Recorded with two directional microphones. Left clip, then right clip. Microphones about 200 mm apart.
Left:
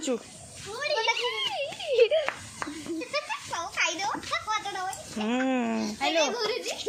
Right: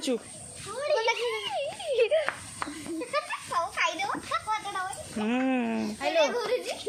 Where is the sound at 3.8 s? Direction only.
15° right (ahead or behind).